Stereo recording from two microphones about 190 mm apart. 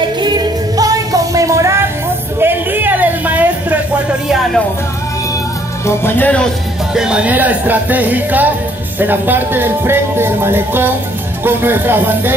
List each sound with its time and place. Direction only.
0.0 s music: 20° right (ahead or behind)
2.4 s a sound: 10° right (ahead or behind)
5.9 s speech: 10° left (ahead or behind); by 12.4 s 10° right (ahead or behind)